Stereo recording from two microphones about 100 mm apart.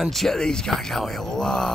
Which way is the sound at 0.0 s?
Centre (ahead or behind).